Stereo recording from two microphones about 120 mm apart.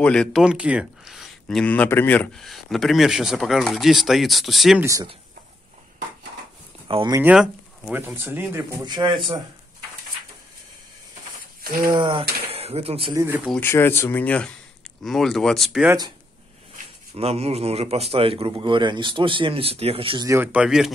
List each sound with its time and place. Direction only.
0.0 s speech: 5° left (ahead or behind)
0.4 s speech: 10° right (ahead or behind)
1.6 s speech: 15° left (ahead or behind)
2.3 s speech: centre (ahead or behind)
6.9 s speech: 50° right (ahead or behind)
7.3 s speech: 15° right (ahead or behind)
8.8 s a man's voice: 40° right (ahead or behind)
11.9 s speech: 40° right (ahead or behind)
13.1 s speech: 25° right (ahead or behind)
13.6 s speech: 20° left (ahead or behind); by 15.8 s centre (ahead or behind)
17.1 s speech: 60° right (ahead or behind)
20.5 s speech: 5° right (ahead or behind)